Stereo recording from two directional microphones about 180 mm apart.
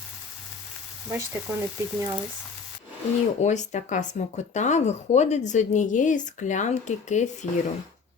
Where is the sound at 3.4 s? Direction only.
40° left (ahead or behind).